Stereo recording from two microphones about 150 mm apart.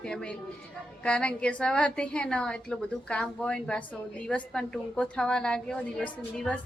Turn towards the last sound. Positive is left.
turn(degrees=10)  # may be behind; listen again after turning